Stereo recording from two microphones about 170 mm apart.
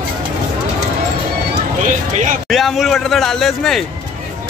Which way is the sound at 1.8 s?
50° right (ahead or behind).